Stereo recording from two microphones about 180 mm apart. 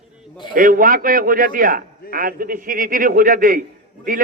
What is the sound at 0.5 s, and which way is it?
A man's voice, 50° right (ahead or behind).